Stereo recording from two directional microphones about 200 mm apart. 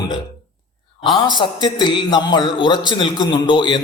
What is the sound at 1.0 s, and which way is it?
A man's voice, 20° left (ahead or behind).